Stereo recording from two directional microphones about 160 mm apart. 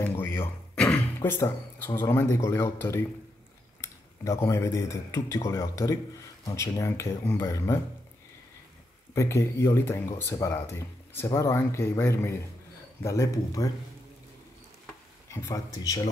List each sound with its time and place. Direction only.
0.0 s speech: 15° left (ahead or behind)
9.1 s speech: 20° left (ahead or behind)
15.2 s speech: 20° left (ahead or behind)